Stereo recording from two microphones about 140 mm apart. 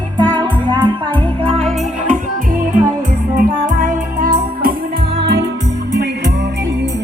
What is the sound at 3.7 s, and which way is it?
Music, 60° right (ahead or behind).